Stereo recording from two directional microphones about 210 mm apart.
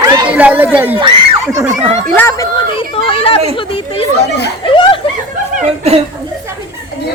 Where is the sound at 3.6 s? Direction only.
25° left (ahead or behind).